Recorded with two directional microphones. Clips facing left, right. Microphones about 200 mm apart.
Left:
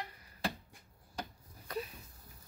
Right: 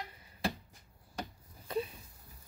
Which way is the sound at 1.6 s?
25° right (ahead or behind).